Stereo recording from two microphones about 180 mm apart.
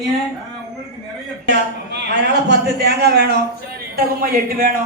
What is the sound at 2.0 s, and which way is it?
A man's voice, 70° right (ahead or behind).